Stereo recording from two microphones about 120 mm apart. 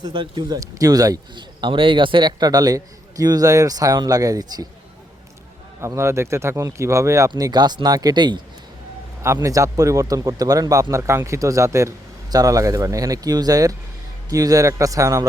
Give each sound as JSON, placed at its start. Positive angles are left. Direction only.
{"t": 0.0, "sound": "a man's voice", "side_deg": -40}
{"t": 5.8, "sound": "a man's voice", "side_deg": -20}
{"t": 9.2, "sound": "speech", "side_deg": -25}